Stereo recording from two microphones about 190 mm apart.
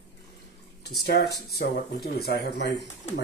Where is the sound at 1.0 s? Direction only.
60° left (ahead or behind).